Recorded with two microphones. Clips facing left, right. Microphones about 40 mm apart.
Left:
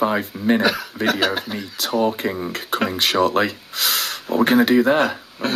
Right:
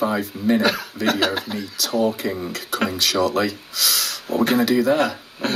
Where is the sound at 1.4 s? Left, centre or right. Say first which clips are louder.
Even; centre.